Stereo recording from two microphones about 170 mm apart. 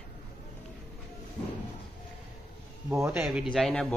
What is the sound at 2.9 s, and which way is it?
Speech, 15° right (ahead or behind).